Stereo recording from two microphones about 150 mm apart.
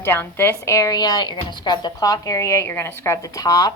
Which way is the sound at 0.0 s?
15° left (ahead or behind).